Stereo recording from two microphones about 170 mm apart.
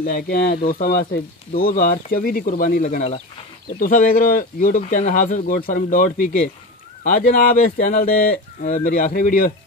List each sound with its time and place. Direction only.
0.0 s speech: 60° left (ahead or behind)